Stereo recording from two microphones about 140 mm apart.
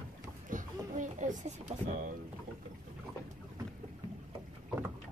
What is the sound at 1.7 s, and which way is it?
Speech, 50° right (ahead or behind).